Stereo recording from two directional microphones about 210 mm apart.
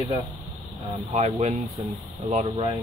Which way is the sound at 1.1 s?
35° right (ahead or behind).